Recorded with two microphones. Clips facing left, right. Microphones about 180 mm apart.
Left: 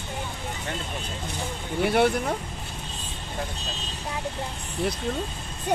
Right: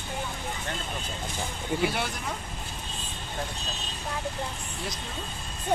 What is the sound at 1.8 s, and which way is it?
Speech, 60° left (ahead or behind).